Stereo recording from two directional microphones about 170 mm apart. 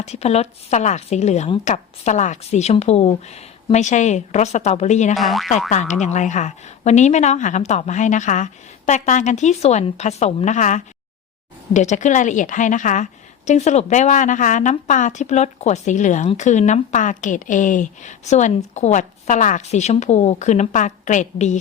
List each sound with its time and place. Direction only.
0.0 s speech: 40° left (ahead or behind)
5.1 s speech: centre (ahead or behind)
5.7 s speech: 45° left (ahead or behind)